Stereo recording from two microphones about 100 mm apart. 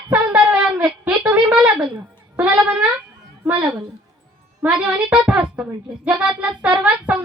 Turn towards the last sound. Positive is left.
turn(degrees=-15)  # may be behind; listen again after turning